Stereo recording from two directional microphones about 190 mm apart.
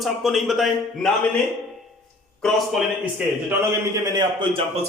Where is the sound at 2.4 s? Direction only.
Centre (ahead or behind).